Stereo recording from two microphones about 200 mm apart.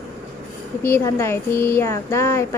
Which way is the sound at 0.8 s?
10° left (ahead or behind).